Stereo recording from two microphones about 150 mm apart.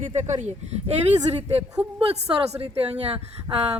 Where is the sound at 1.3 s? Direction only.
45° right (ahead or behind).